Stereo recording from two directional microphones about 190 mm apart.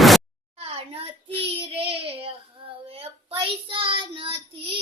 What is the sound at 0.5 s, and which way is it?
Child singing, 30° right (ahead or behind).